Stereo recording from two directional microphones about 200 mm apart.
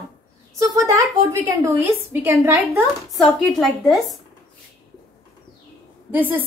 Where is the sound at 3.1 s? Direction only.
Centre (ahead or behind).